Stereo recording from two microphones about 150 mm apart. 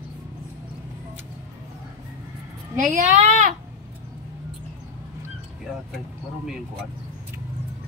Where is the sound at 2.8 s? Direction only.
60° right (ahead or behind).